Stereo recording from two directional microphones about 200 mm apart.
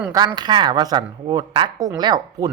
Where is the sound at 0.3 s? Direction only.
20° right (ahead or behind).